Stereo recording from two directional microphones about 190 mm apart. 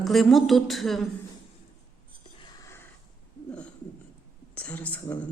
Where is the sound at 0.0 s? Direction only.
Centre (ahead or behind).